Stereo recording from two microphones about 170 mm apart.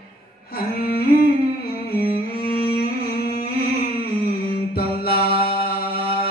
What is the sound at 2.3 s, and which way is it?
Music, 65° left (ahead or behind).